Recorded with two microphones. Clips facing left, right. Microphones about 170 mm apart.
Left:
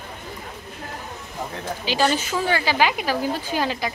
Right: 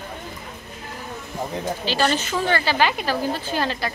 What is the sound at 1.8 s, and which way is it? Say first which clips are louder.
A woman's voice: left 2 dB; 10° left (ahead or behind).